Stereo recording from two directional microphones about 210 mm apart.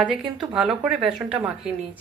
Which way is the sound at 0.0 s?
5° right (ahead or behind).